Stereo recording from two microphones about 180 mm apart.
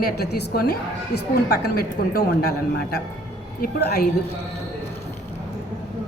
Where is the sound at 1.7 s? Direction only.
55° left (ahead or behind).